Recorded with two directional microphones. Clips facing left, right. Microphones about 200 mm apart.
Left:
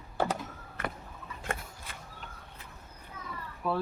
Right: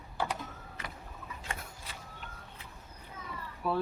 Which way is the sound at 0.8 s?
55° left (ahead or behind).